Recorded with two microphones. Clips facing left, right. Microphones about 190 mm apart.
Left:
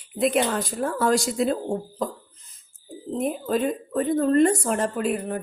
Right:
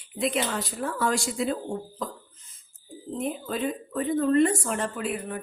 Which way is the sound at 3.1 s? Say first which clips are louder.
Left 5 dB; 45° left (ahead or behind).